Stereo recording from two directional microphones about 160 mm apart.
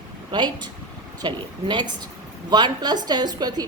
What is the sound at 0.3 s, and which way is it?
A woman's voice, 30° right (ahead or behind).